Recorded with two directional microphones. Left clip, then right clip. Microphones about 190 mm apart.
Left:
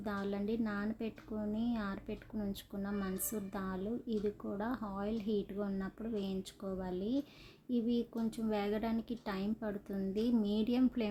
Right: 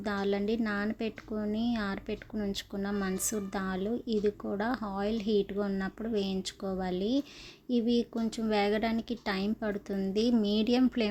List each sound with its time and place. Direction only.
0.0 s a woman's voice: 25° right (ahead or behind)